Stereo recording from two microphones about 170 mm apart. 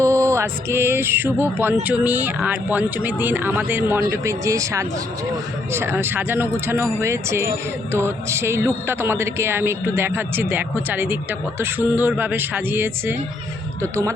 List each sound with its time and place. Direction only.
0.0 s a man's voice: 20° right (ahead or behind)